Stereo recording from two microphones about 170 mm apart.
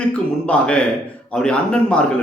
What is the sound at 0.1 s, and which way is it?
A man's voice, 5° left (ahead or behind).